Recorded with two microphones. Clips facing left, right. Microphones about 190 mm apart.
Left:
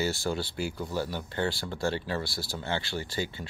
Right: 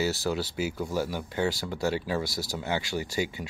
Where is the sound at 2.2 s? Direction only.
40° right (ahead or behind).